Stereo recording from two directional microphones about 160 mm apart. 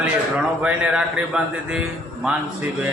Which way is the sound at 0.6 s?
5° right (ahead or behind).